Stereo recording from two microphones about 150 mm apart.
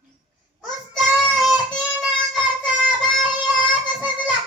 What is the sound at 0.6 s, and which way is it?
Child singing, centre (ahead or behind).